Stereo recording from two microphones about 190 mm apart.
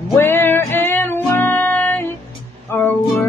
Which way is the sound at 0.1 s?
10° left (ahead or behind).